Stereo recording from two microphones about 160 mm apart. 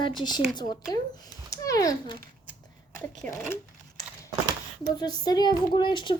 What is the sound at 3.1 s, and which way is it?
Speech, 10° left (ahead or behind).